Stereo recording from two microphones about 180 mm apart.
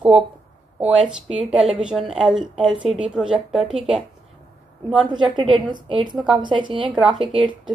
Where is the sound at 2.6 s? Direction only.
30° right (ahead or behind).